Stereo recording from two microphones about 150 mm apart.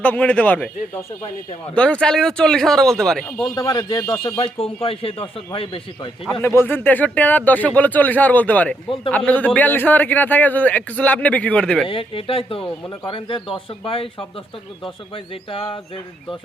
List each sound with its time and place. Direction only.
0.0 s a man's voice: 10° left (ahead or behind)
3.5 s speech: 25° left (ahead or behind)
6.4 s a man's voice: 15° left (ahead or behind)
11.9 s speech: 35° left (ahead or behind)